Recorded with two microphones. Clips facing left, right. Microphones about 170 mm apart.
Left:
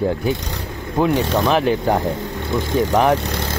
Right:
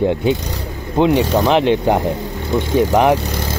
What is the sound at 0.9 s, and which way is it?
Speech, 20° right (ahead or behind).